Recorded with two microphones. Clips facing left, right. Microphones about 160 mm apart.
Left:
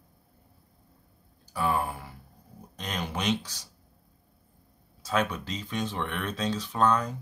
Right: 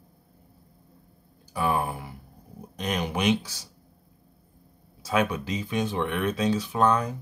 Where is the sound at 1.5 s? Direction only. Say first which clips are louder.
Right 2 dB; 15° right (ahead or behind).